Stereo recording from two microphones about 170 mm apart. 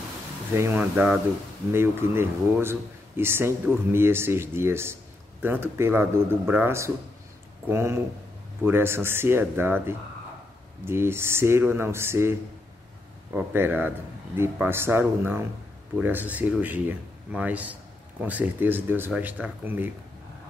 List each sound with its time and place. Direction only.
0.5 s speech: 15° right (ahead or behind)